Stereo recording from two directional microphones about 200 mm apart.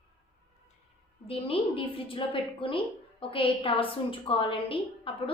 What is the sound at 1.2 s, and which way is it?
A woman's voice, 30° left (ahead or behind).